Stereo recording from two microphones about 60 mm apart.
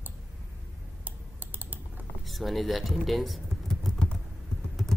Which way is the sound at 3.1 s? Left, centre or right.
Centre.